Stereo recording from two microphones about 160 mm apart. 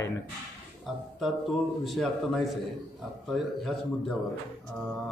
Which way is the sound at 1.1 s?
Centre (ahead or behind).